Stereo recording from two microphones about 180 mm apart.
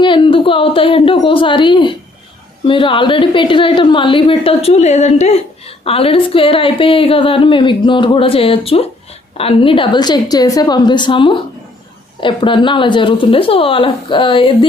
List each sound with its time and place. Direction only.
0.0 s a woman's voice: 30° left (ahead or behind)